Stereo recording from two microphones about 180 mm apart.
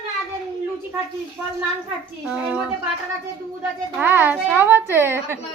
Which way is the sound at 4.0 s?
10° right (ahead or behind).